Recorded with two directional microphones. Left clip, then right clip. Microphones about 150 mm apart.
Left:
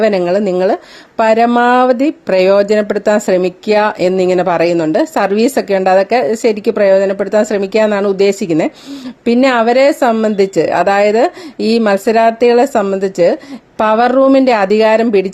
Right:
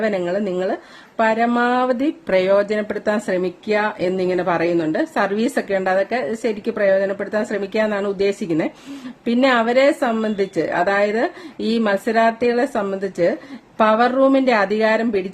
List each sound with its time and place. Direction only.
0.0 s speech: 45° left (ahead or behind)